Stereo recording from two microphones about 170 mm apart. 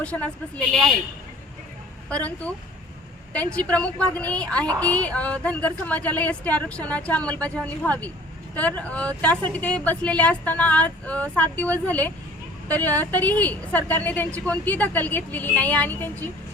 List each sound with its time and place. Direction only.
0.0 s speech: 5° left (ahead or behind)
2.0 s speech: 5° left (ahead or behind)